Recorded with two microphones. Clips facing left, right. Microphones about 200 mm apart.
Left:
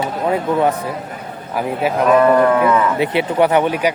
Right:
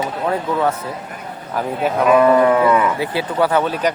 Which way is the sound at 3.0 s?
20° left (ahead or behind).